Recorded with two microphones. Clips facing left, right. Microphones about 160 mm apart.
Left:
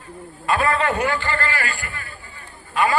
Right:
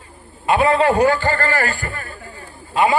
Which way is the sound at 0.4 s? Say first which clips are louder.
Right 5 dB; 25° right (ahead or behind).